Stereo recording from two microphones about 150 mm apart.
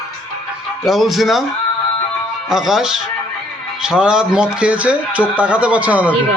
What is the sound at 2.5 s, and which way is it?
Speech, 5° right (ahead or behind).